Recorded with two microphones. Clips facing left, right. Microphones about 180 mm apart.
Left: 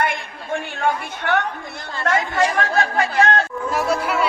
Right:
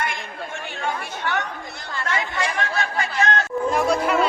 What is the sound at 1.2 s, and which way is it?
Chatter, 55° left (ahead or behind).